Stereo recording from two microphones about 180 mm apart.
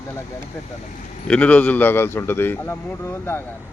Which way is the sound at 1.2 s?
5° left (ahead or behind).